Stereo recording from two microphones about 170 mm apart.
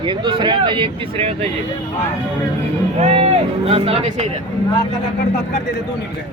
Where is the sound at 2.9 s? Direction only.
40° right (ahead or behind).